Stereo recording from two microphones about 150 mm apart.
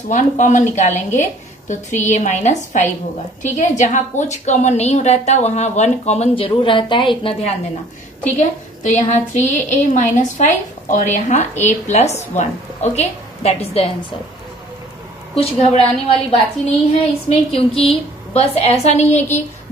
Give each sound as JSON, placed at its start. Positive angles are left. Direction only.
{"t": 0.1, "sound": "a woman's voice", "side_deg": 55}
{"t": 8.4, "sound": "a woman's voice", "side_deg": 55}
{"t": 15.3, "sound": "a woman's voice", "side_deg": 45}